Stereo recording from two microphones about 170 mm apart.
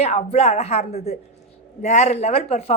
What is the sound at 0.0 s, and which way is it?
A woman's voice, 40° left (ahead or behind).